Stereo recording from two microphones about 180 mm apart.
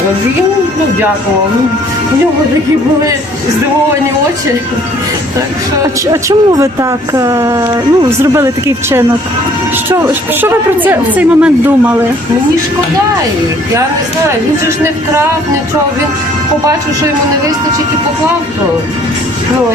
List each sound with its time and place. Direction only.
5.8 s a woman's voice: 20° right (ahead or behind)